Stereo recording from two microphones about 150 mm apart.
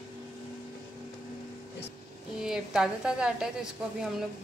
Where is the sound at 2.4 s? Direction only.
5° right (ahead or behind).